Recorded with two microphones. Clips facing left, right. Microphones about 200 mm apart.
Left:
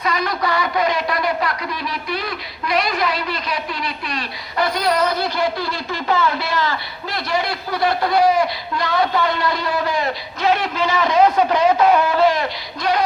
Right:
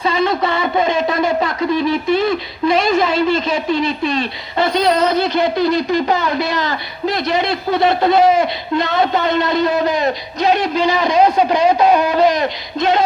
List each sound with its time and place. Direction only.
0.0 s speech: 25° right (ahead or behind)